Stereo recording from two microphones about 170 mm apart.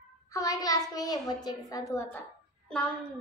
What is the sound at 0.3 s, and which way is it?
A child's voice, 20° left (ahead or behind).